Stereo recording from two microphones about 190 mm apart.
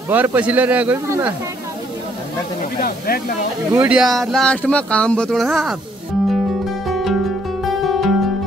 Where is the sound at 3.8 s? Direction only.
5° right (ahead or behind).